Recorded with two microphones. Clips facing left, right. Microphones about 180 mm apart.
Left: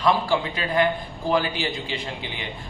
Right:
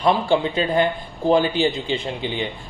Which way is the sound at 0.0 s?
25° right (ahead or behind).